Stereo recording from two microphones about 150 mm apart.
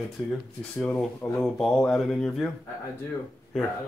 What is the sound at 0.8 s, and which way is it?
Speech, 10° left (ahead or behind).